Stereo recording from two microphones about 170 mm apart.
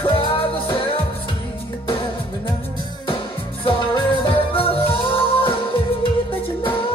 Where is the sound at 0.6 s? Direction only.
30° left (ahead or behind).